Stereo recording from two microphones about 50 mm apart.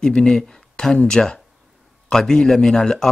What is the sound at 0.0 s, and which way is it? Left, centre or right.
Speech, centre.